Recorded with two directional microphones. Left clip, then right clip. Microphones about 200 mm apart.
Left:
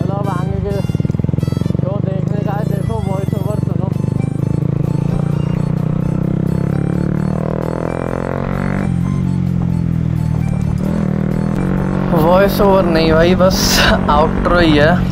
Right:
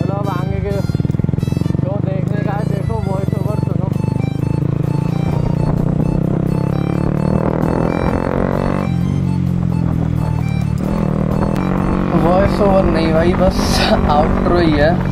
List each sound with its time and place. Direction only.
12.3 s speech: 20° left (ahead or behind)